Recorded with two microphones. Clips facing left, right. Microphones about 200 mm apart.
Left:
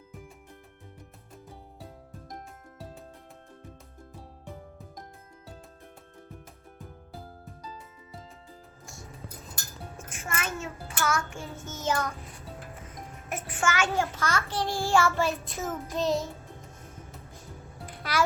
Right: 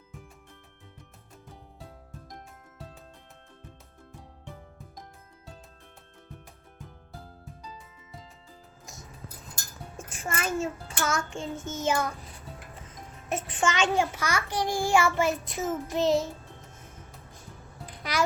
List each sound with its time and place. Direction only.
10.0 s music: 30° right (ahead or behind)
11.7 s a child's voice: 10° right (ahead or behind)
12.9 s a child's voice: 25° right (ahead or behind)
15.9 s music: 20° right (ahead or behind)